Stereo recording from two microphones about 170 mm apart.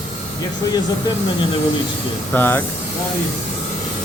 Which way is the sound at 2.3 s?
10° left (ahead or behind).